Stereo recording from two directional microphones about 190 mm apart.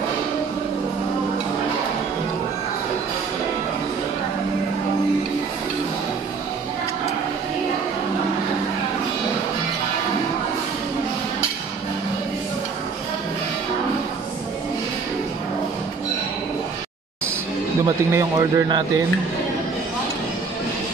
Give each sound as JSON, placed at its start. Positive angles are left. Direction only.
{"t": 17.8, "sound": "a man's voice", "side_deg": -20}